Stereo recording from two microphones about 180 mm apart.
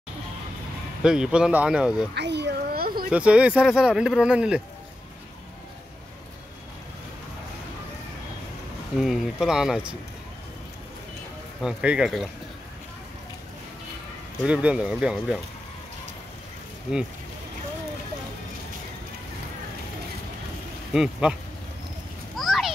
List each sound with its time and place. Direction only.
1.0 s speech: 5° right (ahead or behind)
2.1 s a sound: 70° right (ahead or behind)
3.1 s speech: 5° right (ahead or behind)
8.9 s speech: centre (ahead or behind)
11.6 s speech: 5° right (ahead or behind)
14.4 s speech: 5° right (ahead or behind)
20.9 s speech: 5° right (ahead or behind)
22.3 s a sound: centre (ahead or behind)